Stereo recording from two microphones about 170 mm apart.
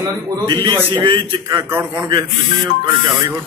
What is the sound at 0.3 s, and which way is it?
A man's voice, 30° right (ahead or behind).